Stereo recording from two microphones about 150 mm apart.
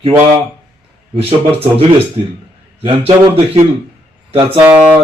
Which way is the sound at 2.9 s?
40° right (ahead or behind).